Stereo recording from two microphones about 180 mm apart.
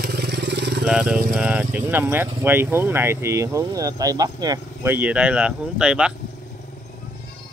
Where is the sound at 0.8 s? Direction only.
5° right (ahead or behind).